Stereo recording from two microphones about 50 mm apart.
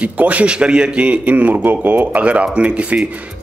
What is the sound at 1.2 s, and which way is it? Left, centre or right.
Speech, right.